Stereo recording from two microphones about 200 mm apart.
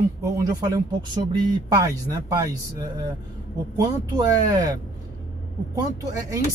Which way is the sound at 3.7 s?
15° right (ahead or behind).